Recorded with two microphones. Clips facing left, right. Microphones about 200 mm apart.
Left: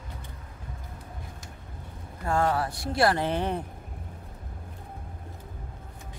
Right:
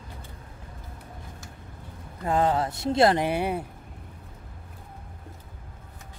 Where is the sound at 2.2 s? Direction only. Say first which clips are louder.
Right 2 dB; 20° right (ahead or behind).